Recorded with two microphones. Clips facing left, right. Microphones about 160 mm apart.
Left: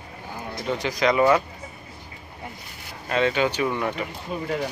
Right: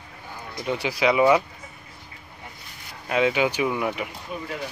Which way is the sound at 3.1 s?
10° right (ahead or behind).